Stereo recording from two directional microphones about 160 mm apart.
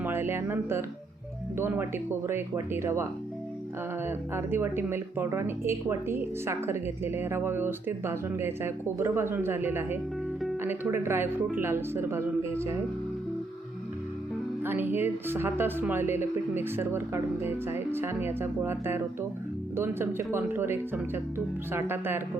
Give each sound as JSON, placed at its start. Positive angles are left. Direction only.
{"t": 0.0, "sound": "a woman's voice", "side_deg": -15}
{"t": 14.6, "sound": "a woman's voice", "side_deg": -10}